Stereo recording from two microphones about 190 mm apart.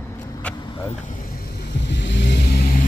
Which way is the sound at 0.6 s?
25° left (ahead or behind).